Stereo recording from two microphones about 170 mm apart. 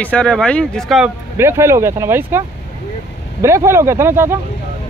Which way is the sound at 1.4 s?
15° right (ahead or behind).